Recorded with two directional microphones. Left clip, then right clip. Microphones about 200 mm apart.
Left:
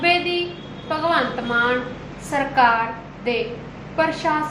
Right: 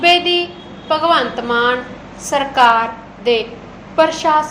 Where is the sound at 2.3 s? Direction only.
35° right (ahead or behind).